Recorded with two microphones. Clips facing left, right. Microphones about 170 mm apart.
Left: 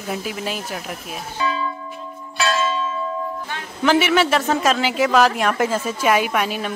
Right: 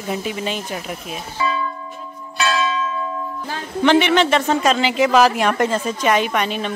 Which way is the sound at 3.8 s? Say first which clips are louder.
Right 2 dB; 5° left (ahead or behind).